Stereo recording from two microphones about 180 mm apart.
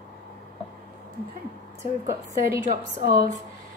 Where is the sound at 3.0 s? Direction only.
55° right (ahead or behind).